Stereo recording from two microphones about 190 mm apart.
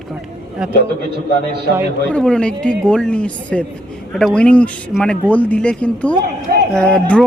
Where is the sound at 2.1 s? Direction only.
5° left (ahead or behind).